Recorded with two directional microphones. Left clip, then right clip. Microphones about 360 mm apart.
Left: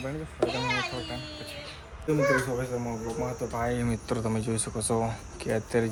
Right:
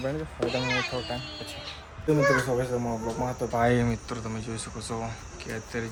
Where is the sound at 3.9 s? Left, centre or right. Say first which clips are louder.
Left 3 dB; centre.